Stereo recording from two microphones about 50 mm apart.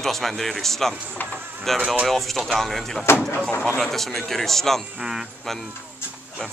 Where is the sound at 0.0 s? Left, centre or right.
Centre.